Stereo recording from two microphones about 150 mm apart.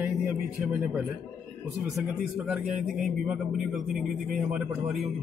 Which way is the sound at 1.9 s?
5° right (ahead or behind).